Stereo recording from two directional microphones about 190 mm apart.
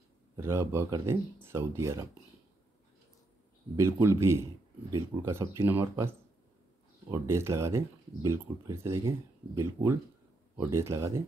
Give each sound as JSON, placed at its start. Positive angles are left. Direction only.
{"t": 0.4, "sound": "speech", "side_deg": -15}
{"t": 3.7, "sound": "speech", "side_deg": -15}